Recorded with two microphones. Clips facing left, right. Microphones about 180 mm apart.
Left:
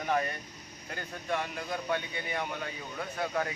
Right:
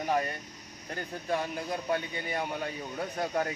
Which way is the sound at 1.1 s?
35° right (ahead or behind).